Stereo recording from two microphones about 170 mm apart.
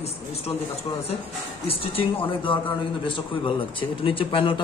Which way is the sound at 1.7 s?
30° left (ahead or behind).